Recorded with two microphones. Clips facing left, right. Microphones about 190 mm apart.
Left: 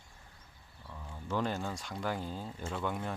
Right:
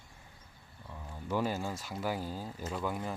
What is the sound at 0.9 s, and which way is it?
Speech, 10° right (ahead or behind).